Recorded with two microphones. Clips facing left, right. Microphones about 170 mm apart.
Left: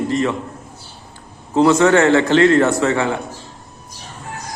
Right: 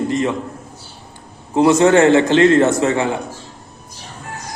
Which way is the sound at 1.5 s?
20° right (ahead or behind).